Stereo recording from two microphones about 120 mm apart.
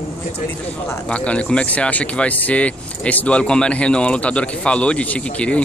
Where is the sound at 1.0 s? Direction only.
10° left (ahead or behind).